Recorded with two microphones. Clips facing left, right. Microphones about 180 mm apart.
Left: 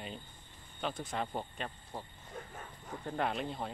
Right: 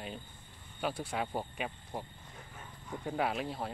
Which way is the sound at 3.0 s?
5° right (ahead or behind).